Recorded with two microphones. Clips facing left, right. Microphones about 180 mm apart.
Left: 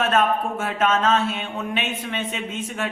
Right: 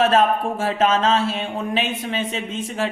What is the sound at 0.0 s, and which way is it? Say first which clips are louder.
Speech: right 3 dB; 30° right (ahead or behind).